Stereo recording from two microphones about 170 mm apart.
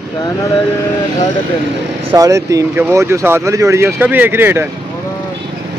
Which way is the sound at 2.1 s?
20° right (ahead or behind).